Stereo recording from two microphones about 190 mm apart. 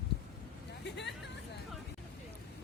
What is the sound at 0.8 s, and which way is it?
Hubbub, 65° left (ahead or behind).